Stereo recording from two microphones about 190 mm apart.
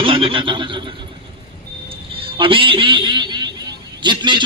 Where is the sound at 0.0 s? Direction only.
30° right (ahead or behind).